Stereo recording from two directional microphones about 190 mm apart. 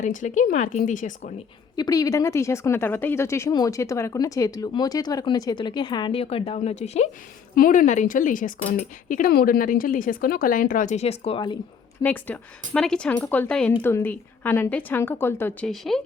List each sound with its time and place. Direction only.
0.0 s speech: 40° left (ahead or behind)
1.7 s speech: 20° left (ahead or behind); by 7.1 s 35° left (ahead or behind)
7.5 s a woman's voice: 45° left (ahead or behind); by 11.5 s 30° left (ahead or behind)
12.0 s a woman's voice: 10° left (ahead or behind)
15.7 s speech: centre (ahead or behind)